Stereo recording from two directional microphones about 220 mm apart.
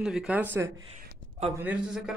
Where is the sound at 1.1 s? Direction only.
25° right (ahead or behind).